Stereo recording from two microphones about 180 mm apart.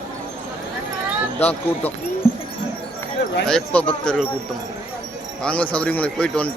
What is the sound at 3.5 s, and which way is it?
Speech, 5° left (ahead or behind).